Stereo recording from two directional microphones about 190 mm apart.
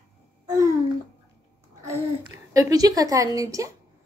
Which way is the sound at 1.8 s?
20° right (ahead or behind).